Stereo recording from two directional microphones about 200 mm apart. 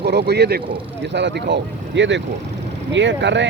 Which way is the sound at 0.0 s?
55° right (ahead or behind).